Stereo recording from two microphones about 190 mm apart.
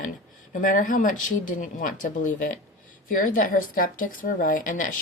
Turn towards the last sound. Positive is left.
turn(degrees=45)  # may be behind; listen again after turning